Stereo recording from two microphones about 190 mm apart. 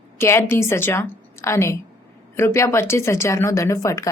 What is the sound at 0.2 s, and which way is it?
Speech, 15° left (ahead or behind).